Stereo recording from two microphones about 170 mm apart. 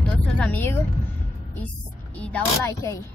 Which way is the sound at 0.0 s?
10° left (ahead or behind).